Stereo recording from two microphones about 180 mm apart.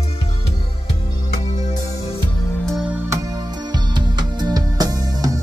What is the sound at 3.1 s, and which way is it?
Music, 20° right (ahead or behind).